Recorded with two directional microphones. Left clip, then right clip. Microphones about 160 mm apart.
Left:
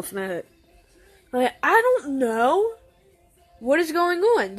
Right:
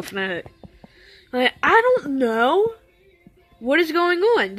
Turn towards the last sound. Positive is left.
turn(degrees=-20)  # may be behind; listen again after turning